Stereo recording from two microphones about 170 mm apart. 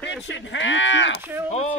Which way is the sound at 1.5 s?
40° left (ahead or behind).